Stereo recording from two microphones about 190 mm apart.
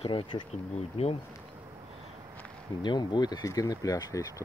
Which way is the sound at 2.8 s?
25° left (ahead or behind).